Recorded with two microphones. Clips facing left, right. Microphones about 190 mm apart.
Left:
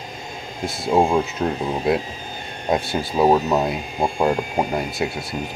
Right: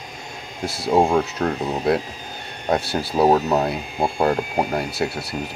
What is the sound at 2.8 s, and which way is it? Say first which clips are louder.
Speech: right 1 dB; centre (ahead or behind).